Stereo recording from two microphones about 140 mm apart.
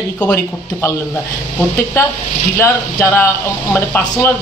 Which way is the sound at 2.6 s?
15° left (ahead or behind).